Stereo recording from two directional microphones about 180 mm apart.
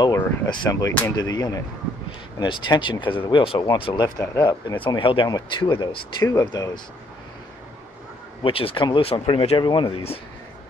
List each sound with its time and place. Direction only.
0.0 s speech: 25° left (ahead or behind)
8.4 s speech: 30° left (ahead or behind)